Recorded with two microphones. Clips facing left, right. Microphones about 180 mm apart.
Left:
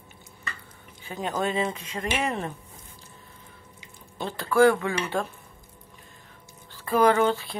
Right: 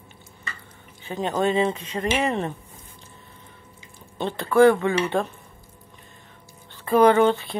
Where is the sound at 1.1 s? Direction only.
Centre (ahead or behind).